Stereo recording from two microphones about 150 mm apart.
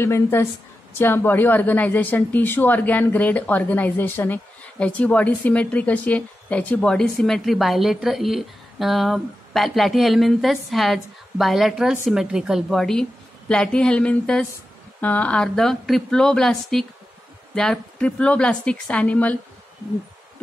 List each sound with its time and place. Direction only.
0.0 s a woman's voice: 15° left (ahead or behind)